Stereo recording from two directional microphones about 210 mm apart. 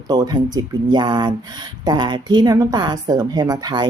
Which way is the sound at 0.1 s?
20° right (ahead or behind).